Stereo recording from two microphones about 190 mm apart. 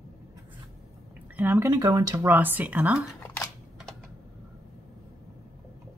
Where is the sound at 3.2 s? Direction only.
5° left (ahead or behind).